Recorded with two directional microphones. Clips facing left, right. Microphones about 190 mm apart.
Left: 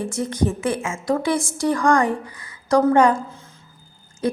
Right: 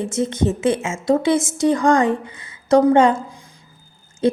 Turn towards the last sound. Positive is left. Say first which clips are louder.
# right 5 dB
turn(degrees=-25)  # may be behind; listen again after turning